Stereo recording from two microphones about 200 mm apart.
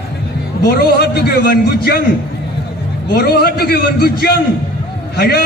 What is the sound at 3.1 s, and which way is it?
A man's voice, 50° left (ahead or behind).